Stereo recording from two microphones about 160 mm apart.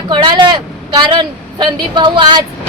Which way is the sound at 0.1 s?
30° right (ahead or behind).